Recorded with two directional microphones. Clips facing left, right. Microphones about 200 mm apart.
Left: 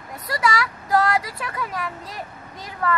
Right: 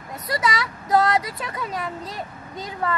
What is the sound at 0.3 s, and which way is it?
Speech, 20° right (ahead or behind).